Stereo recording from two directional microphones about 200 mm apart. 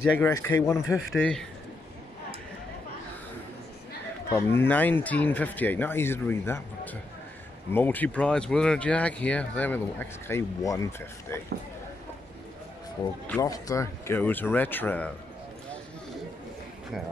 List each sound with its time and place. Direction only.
0.2 s speech: 15° left (ahead or behind)
1.1 s a man's voice: 5° left (ahead or behind)
4.3 s speech: 15° left (ahead or behind)
13.3 s speech: 15° left (ahead or behind)